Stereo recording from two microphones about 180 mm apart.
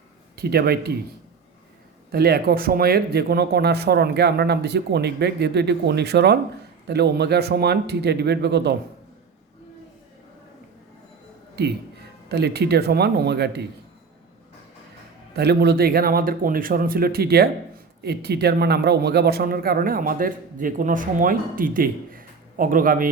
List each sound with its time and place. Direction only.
0.3 s speech: 60° right (ahead or behind)
2.1 s speech: 60° right (ahead or behind)
12.3 s speech: 65° right (ahead or behind)
15.4 s a man's voice: 65° right (ahead or behind)